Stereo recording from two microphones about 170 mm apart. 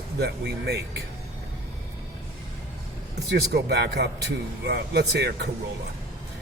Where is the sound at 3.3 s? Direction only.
75° right (ahead or behind).